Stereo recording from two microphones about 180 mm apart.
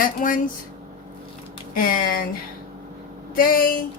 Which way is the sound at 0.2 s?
45° left (ahead or behind).